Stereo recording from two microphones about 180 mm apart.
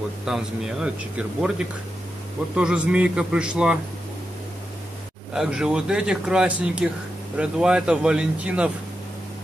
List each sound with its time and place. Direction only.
0.2 s speech: 5° right (ahead or behind)
2.5 s speech: 5° right (ahead or behind)
5.3 s speech: 5° right (ahead or behind)